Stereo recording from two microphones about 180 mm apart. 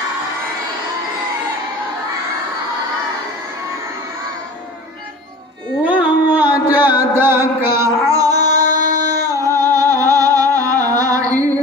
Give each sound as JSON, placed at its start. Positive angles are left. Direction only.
{"t": 5.9, "sound": "music", "side_deg": -10}